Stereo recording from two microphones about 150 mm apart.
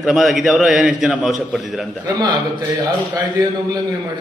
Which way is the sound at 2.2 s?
25° right (ahead or behind).